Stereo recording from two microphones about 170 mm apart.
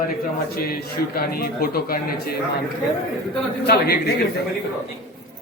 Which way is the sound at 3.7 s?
70° left (ahead or behind).